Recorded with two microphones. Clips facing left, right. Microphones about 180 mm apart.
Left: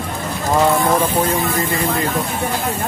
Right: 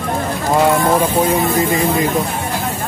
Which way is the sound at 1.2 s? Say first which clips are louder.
Right 4 dB; 10° right (ahead or behind).